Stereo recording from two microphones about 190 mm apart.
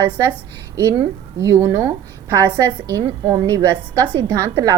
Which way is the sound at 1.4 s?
20° right (ahead or behind).